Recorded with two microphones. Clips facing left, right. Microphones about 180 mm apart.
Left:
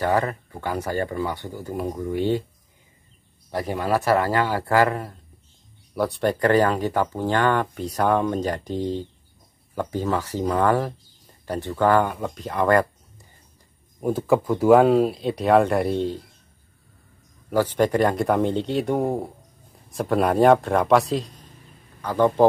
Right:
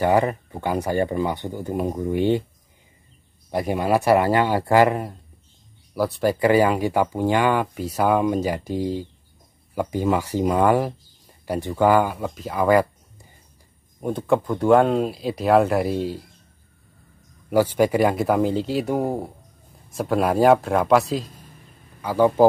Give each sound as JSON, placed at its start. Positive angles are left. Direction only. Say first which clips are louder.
{"t": 0.0, "sound": "speech", "louder": "right 3 dB", "side_deg": -15}
{"t": 3.5, "sound": "speech", "louder": "right 3 dB", "side_deg": -15}
{"t": 5.9, "sound": "speech", "louder": "right 1 dB", "side_deg": 0}
{"t": 14.0, "sound": "speech", "louder": "left 1 dB", "side_deg": 5}
{"t": 17.5, "sound": "speech", "louder": "right 2 dB", "side_deg": -10}